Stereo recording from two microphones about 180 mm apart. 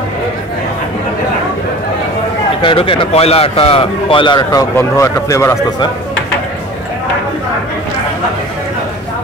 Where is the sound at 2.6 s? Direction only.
30° left (ahead or behind).